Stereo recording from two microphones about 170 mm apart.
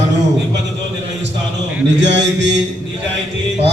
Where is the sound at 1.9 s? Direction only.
90° right.